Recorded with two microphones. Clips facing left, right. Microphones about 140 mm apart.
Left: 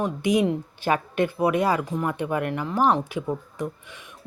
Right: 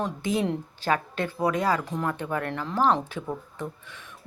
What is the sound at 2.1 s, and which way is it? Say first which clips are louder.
Speech: left 3 dB; 15° left (ahead or behind).